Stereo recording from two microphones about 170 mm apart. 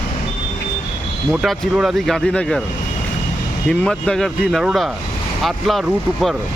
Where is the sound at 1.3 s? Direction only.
Centre (ahead or behind).